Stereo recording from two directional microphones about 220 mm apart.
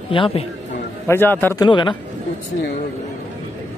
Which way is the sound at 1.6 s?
20° left (ahead or behind).